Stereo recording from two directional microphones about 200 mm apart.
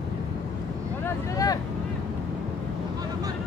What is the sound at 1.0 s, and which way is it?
Vehicle, 15° left (ahead or behind).